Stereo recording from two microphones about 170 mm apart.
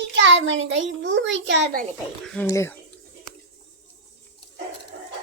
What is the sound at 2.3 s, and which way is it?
Speech, 15° left (ahead or behind).